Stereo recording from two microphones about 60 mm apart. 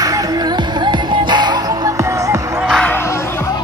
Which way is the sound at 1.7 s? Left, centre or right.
Right.